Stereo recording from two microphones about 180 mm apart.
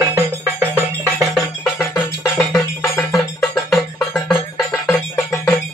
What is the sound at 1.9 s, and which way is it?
Music, 15° left (ahead or behind).